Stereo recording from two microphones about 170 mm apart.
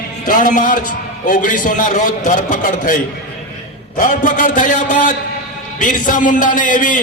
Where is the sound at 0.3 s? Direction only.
50° left (ahead or behind).